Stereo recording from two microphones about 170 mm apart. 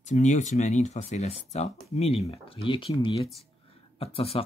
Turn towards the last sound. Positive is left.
turn(degrees=35)  # may be behind; listen again after turning